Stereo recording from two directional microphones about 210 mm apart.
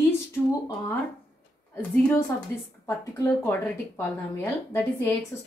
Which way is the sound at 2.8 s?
15° left (ahead or behind).